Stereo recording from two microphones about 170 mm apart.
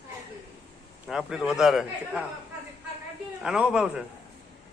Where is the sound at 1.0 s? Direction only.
5° right (ahead or behind).